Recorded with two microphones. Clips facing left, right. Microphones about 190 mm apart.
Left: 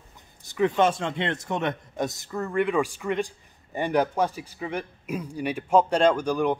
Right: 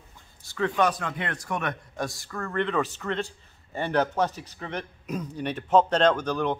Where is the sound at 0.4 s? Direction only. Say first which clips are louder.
Left 3 dB; 20° left (ahead or behind).